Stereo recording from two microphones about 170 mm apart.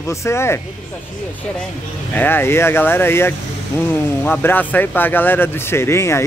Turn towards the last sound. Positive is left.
turn(degrees=15)  # may be behind; listen again after turning